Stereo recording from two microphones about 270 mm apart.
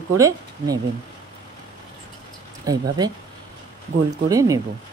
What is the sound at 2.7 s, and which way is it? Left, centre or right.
Speech, centre.